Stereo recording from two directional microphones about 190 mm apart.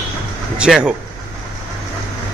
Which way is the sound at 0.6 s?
5° right (ahead or behind).